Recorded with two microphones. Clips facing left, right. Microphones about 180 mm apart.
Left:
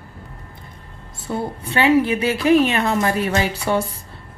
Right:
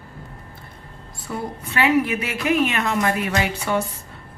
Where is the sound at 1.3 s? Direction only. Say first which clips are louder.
Left 4 dB; 30° left (ahead or behind).